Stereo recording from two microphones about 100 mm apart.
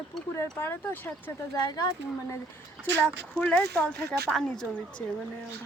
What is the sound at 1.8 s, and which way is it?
Speech, 30° left (ahead or behind).